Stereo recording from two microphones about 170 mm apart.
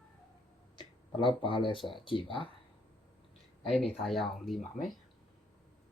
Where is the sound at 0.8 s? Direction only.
30° left (ahead or behind).